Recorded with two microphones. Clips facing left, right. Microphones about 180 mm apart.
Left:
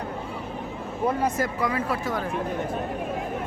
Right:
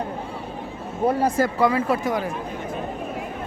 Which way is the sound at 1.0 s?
30° right (ahead or behind).